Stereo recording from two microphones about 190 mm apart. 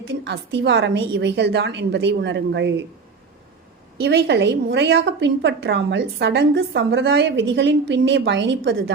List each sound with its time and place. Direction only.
0.3 s a woman's voice: 65° right (ahead or behind)
4.0 s a woman's voice: 65° right (ahead or behind)